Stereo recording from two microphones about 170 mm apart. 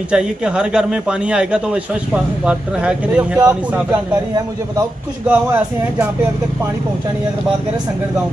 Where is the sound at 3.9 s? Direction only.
20° right (ahead or behind).